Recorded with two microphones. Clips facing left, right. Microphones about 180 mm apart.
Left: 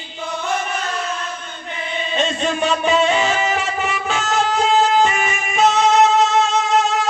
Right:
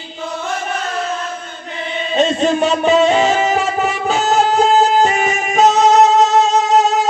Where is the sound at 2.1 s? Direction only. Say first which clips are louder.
Right 7 dB; 40° right (ahead or behind).